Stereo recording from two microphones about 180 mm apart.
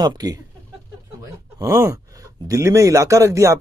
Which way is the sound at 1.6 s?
20° right (ahead or behind).